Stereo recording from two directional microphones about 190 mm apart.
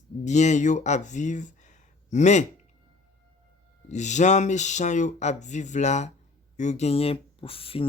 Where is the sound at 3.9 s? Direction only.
40° left (ahead or behind).